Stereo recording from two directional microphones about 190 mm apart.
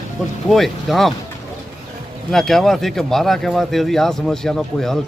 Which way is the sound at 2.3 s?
Centre (ahead or behind).